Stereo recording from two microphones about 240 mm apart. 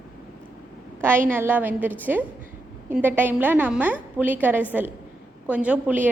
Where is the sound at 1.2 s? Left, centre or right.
Centre.